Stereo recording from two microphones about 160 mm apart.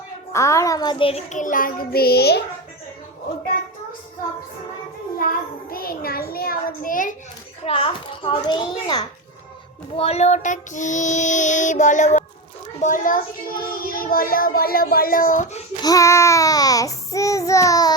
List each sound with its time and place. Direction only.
0.3 s speech: 20° left (ahead or behind)
1.3 s a child's voice: 55° left (ahead or behind); by 2.4 s 90° left
5.2 s a child's voice: 60° left (ahead or behind)
7.6 s a child's voice: 35° left (ahead or behind)
10.0 s child singing: 40° left (ahead or behind)
12.8 s a child's voice: 55° left (ahead or behind)
15.8 s speech: 20° left (ahead or behind)